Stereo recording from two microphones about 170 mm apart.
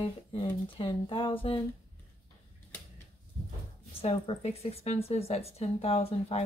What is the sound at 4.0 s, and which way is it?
Speech, 35° left (ahead or behind).